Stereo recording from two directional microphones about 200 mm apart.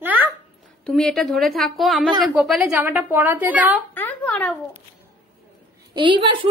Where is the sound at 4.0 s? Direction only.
10° left (ahead or behind).